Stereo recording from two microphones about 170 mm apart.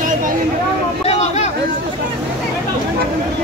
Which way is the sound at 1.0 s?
40° left (ahead or behind).